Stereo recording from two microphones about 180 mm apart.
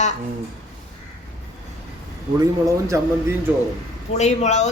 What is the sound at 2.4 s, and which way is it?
Speech, 15° right (ahead or behind).